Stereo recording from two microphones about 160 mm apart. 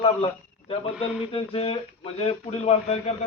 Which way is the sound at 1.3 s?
35° left (ahead or behind).